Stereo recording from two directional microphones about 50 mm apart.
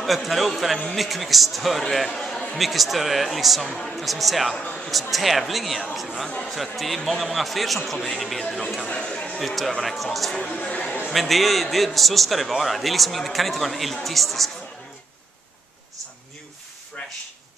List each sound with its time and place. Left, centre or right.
0.0 s a man's voice: centre
9.8 s a man's voice: centre
10.5 s speech: left
11.1 s a man's voice: centre